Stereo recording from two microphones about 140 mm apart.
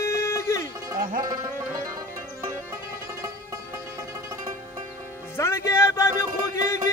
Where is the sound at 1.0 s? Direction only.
75° right (ahead or behind).